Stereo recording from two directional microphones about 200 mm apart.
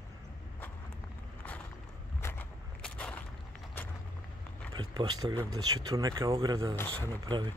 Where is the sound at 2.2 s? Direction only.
10° left (ahead or behind).